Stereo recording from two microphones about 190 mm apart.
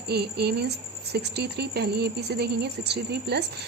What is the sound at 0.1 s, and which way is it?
Speech, 60° right (ahead or behind).